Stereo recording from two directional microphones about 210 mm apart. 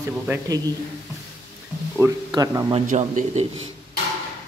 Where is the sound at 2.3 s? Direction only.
20° right (ahead or behind).